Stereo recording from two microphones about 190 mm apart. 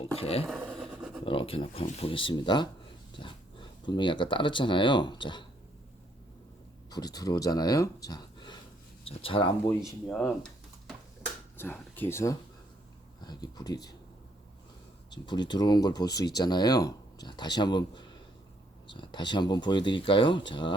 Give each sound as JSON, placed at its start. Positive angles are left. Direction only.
{"t": 0.0, "sound": "speech", "side_deg": 30}
{"t": 0.4, "sound": "a sound", "side_deg": 0}
{"t": 1.2, "sound": "speech", "side_deg": 30}
{"t": 6.9, "sound": "speech", "side_deg": 20}
{"t": 10.1, "sound": "a sound", "side_deg": 5}
{"t": 11.5, "sound": "speech", "side_deg": 10}
{"t": 15.1, "sound": "speech", "side_deg": 25}